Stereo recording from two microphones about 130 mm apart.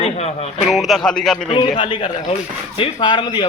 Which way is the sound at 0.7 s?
Centre (ahead or behind).